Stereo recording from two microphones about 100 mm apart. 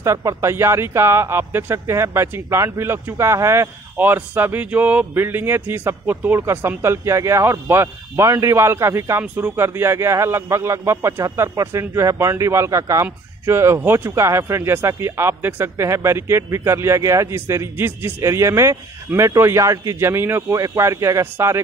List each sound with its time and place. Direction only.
0.0 s a man's voice: 30° right (ahead or behind)
9.2 s a man's voice: 15° right (ahead or behind)